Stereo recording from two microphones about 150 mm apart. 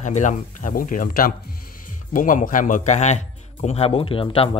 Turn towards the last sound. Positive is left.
turn(degrees=40)  # may be behind; listen again after turning